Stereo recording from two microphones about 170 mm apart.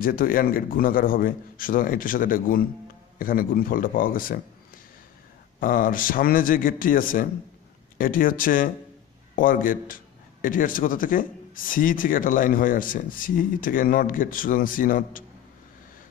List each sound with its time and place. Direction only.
0.0 s a man's voice: 55° left (ahead or behind)
5.6 s a man's voice: 55° left (ahead or behind)